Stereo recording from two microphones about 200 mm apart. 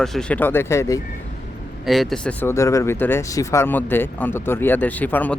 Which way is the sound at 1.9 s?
Centre (ahead or behind).